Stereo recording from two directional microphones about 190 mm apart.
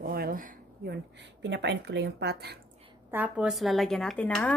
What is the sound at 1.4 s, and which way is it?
Speech, 65° right (ahead or behind).